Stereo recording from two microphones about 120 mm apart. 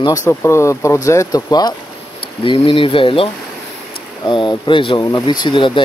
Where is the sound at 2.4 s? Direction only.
45° left (ahead or behind).